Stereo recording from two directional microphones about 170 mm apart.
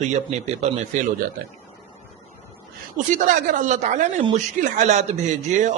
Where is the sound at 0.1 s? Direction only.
40° right (ahead or behind).